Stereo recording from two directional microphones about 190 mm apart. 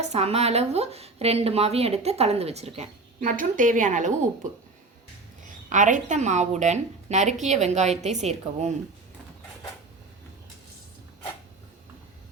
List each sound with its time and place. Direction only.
0.0 s a woman's voice: 35° right (ahead or behind)
5.4 s a woman's voice: 40° right (ahead or behind)